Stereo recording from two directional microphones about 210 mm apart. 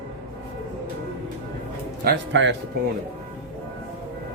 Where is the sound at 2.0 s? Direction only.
55° right (ahead or behind).